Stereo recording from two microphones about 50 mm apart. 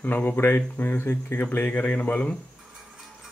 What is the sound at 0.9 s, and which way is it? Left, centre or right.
Speech, left.